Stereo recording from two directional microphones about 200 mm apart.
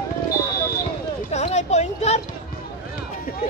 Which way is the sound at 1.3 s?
35° left (ahead or behind).